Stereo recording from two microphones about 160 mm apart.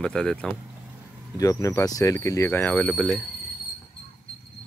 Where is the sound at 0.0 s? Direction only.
5° left (ahead or behind).